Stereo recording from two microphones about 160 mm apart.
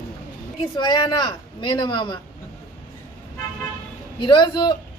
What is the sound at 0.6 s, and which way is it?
A woman's voice, 25° left (ahead or behind).